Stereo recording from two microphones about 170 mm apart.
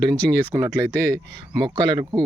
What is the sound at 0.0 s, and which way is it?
Speech, 20° right (ahead or behind).